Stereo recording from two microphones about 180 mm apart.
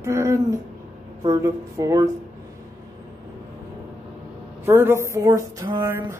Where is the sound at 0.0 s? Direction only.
15° right (ahead or behind).